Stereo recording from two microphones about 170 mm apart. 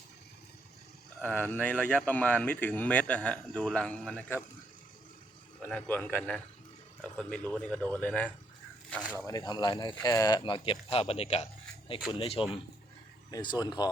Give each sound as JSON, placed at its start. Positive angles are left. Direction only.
{"t": 1.2, "sound": "speech", "side_deg": 10}
{"t": 5.6, "sound": "speech", "side_deg": 10}
{"t": 9.1, "sound": "speech", "side_deg": 20}